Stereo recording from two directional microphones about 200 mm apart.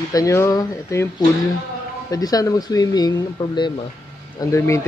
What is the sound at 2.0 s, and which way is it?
A man's voice, 20° left (ahead or behind).